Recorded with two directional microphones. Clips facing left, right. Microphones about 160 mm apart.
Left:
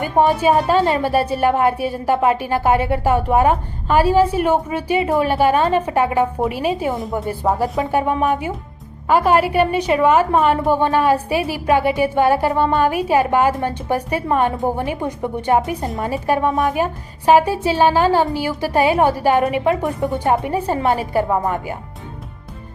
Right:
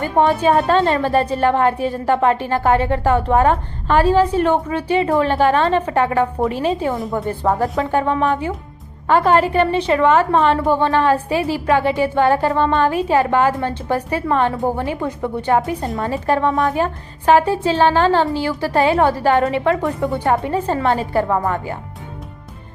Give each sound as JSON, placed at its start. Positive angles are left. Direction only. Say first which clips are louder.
{"t": 0.0, "sound": "a woman's voice", "louder": "even", "side_deg": 10}